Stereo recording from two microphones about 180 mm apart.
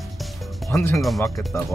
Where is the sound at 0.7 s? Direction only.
15° left (ahead or behind).